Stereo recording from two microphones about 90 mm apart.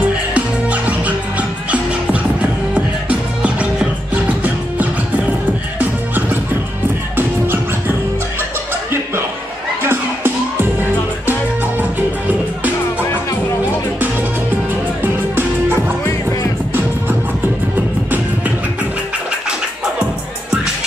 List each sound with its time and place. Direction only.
0.0 s music: 15° right (ahead or behind)
7.2 s music: 25° right (ahead or behind)
9.8 s music: 25° right (ahead or behind)
15.0 s music: 25° right (ahead or behind)